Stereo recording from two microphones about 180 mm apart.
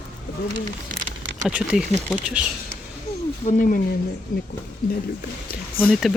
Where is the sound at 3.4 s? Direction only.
50° left (ahead or behind).